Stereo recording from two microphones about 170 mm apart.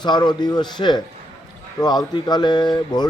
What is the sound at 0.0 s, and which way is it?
Speech, 25° left (ahead or behind).